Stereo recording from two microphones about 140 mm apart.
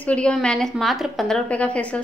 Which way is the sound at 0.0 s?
10° left (ahead or behind).